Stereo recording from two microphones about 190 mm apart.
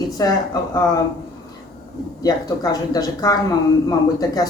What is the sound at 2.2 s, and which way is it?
A woman's voice, 20° left (ahead or behind).